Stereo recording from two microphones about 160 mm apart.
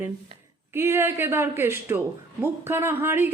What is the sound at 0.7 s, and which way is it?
A woman's voice, 15° right (ahead or behind).